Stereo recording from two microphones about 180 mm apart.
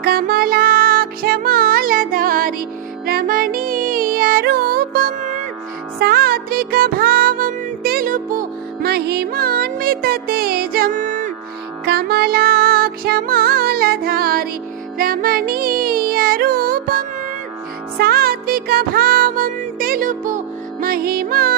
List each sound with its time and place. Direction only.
0.0 s music: 55° right (ahead or behind)
11.9 s music: 60° right (ahead or behind)